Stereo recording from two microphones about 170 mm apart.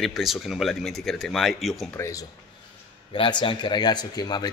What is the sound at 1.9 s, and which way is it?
Speech, 15° left (ahead or behind).